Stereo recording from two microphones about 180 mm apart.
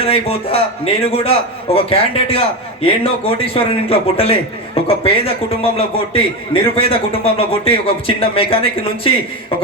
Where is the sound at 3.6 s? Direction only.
35° left (ahead or behind).